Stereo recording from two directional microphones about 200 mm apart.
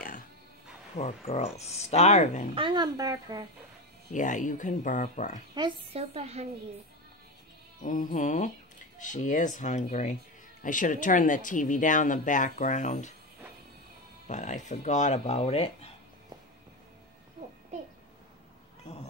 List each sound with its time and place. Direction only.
0.9 s speech: 35° left (ahead or behind)
2.5 s speech: 25° right (ahead or behind)
4.1 s speech: 40° left (ahead or behind)
5.5 s a woman's voice: 25° right (ahead or behind)
7.8 s speech: 40° left (ahead or behind)
14.2 s speech: 35° left (ahead or behind)